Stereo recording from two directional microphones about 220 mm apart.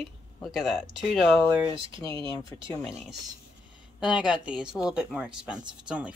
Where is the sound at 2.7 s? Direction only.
5° right (ahead or behind).